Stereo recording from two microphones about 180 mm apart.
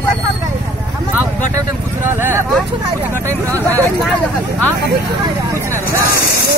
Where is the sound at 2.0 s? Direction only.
10° right (ahead or behind).